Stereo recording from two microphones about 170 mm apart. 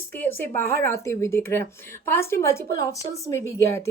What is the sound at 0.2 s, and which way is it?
Speech, 10° left (ahead or behind).